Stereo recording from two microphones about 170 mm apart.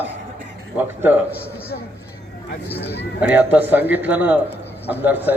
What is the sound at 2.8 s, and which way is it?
Speech, 80° left.